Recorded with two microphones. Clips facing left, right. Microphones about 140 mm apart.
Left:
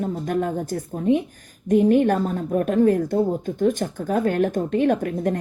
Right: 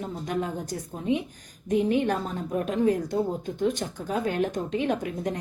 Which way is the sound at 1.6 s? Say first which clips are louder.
Left 7 dB; 50° left (ahead or behind).